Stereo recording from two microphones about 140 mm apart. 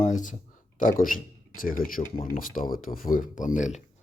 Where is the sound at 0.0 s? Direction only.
65° left (ahead or behind).